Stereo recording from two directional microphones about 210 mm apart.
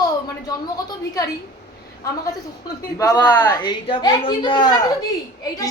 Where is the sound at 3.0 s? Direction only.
15° left (ahead or behind).